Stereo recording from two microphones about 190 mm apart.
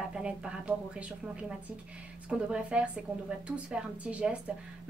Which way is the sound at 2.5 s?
5° right (ahead or behind).